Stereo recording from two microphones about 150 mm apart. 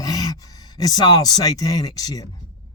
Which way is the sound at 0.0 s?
25° left (ahead or behind).